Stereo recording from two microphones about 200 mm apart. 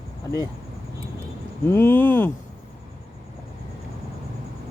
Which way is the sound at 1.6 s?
10° left (ahead or behind).